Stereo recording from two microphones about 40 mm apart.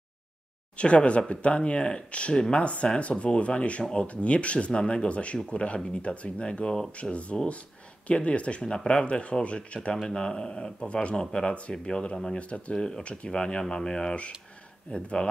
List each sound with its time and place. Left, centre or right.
0.7 s speech: left
8.7 s speech: centre
10.0 s speech: centre
12.4 s speech: left
12.7 s speech: centre